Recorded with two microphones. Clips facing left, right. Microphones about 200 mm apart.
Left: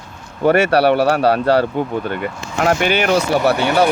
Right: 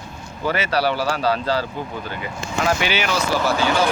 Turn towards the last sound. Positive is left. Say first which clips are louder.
# left 5 dB
turn(degrees=65)  # may be behind; listen again after turning